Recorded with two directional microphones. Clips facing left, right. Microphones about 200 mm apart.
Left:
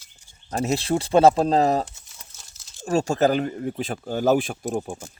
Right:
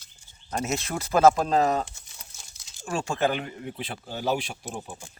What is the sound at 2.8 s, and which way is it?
Speech, 40° left (ahead or behind).